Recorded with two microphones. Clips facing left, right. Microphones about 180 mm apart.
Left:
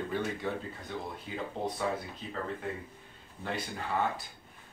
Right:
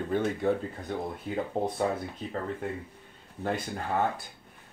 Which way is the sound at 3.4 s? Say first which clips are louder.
Right 5 dB; 50° right (ahead or behind).